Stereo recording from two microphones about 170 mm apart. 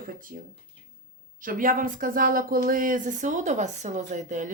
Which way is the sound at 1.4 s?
55° right (ahead or behind).